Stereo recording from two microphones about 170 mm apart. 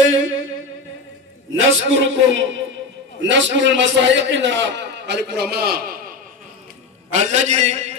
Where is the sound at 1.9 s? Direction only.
90° right; by 6.2 s 55° right (ahead or behind).